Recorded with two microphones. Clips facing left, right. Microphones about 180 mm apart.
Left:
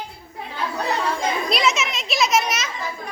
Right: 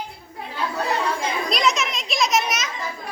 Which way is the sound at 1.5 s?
5° left (ahead or behind).